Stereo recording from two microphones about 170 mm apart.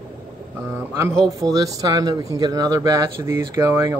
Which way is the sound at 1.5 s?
20° right (ahead or behind).